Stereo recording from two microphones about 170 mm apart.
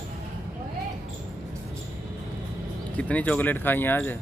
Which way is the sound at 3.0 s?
10° left (ahead or behind).